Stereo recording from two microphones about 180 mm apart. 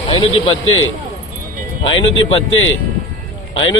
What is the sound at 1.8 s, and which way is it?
Speech, 30° left (ahead or behind).